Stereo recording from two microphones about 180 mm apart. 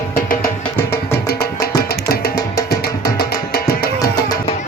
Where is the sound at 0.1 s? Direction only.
55° left (ahead or behind).